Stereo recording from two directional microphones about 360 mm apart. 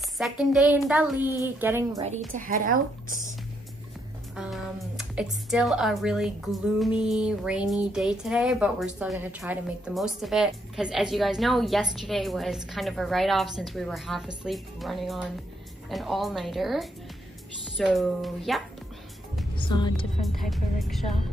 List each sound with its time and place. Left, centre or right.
0.2 s a woman's voice: centre
2.0 s a woman's voice: centre
4.4 s a woman's voice: centre
19.7 s a woman's voice: centre
20.3 s a woman's voice: centre